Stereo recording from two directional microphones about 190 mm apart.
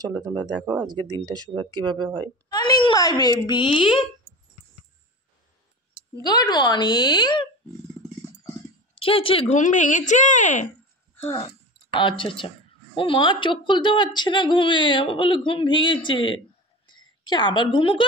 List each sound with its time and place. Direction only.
0.0 s speech: 20° right (ahead or behind)
2.5 s a woman's voice: 20° left (ahead or behind)
6.2 s a woman's voice: 20° left (ahead or behind)
8.9 s speech: 30° left (ahead or behind)
11.2 s a woman's voice: 25° left (ahead or behind)
16.8 s a sound: 25° left (ahead or behind)